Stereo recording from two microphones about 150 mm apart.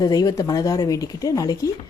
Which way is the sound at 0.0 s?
25° left (ahead or behind).